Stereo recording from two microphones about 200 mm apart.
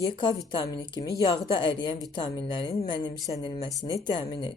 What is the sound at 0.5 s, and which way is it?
Speech, 20° left (ahead or behind).